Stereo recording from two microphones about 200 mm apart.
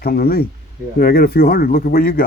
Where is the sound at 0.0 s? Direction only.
50° left (ahead or behind).